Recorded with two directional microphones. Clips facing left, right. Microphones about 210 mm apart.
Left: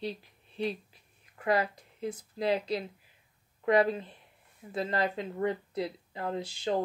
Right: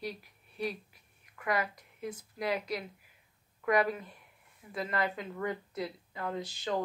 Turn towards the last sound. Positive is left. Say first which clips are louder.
# left 3 dB
turn(degrees=30)  # may be behind; listen again after turning